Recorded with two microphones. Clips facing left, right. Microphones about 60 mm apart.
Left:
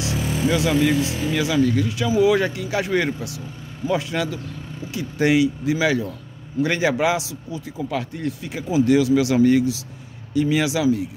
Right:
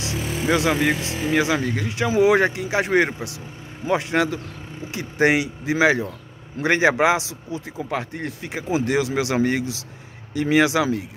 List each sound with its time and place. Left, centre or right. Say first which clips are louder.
0.2 s vehicle: left 4 dB; centre
0.5 s speech: even; right
1.0 s speech: right 2 dB; right